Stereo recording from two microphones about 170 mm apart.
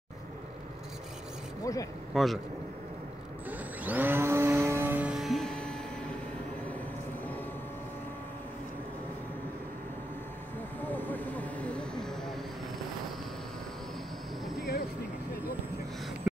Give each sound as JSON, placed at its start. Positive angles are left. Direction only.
{"t": 1.6, "sound": "speech", "side_deg": 20}
{"t": 2.1, "sound": "a man's voice", "side_deg": 0}
{"t": 3.4, "sound": "a sound", "side_deg": -10}
{"t": 10.8, "sound": "vehicle", "side_deg": 10}